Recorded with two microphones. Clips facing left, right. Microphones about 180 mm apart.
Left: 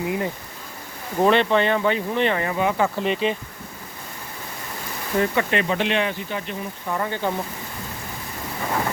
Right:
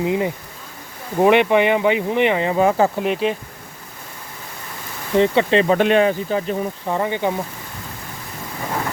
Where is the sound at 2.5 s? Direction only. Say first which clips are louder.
Right 5 dB; 40° right (ahead or behind).